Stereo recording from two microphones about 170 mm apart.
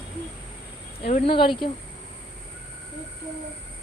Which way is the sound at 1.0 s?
35° left (ahead or behind).